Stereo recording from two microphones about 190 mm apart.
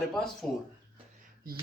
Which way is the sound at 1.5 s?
50° right (ahead or behind).